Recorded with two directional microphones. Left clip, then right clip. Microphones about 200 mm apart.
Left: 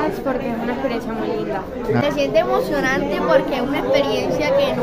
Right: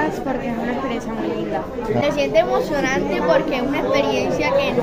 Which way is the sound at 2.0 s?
5° left (ahead or behind).